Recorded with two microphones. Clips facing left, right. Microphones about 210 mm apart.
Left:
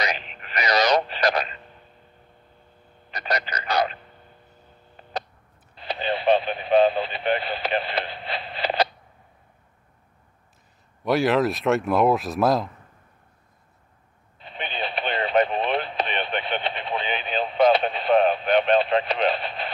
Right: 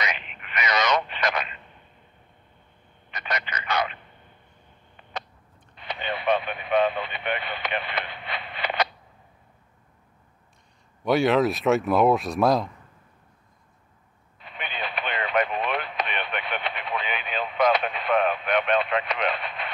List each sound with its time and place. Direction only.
0.0 s telephone: 35° left (ahead or behind)
3.1 s a sound: 35° left (ahead or behind)
5.8 s radio: 35° left (ahead or behind)
11.1 s speech: centre (ahead or behind)
14.4 s radio: 30° left (ahead or behind)